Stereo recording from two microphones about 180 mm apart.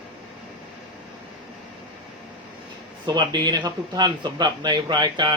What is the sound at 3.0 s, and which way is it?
Speech, 25° right (ahead or behind).